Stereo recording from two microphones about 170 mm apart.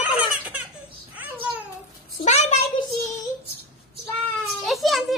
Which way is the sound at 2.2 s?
40° left (ahead or behind).